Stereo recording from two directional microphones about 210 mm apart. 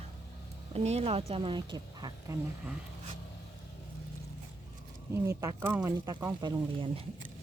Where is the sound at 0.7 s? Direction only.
30° right (ahead or behind).